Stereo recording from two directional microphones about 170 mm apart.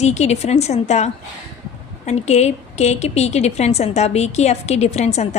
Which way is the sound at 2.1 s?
40° left (ahead or behind).